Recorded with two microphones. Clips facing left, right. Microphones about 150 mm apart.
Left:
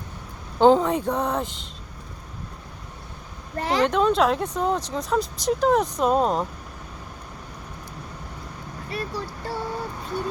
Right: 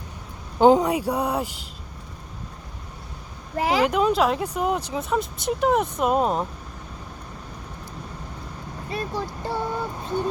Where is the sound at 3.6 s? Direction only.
5° right (ahead or behind).